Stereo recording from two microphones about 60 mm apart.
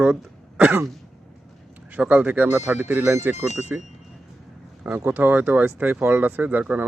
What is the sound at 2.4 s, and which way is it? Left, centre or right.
Speech, right.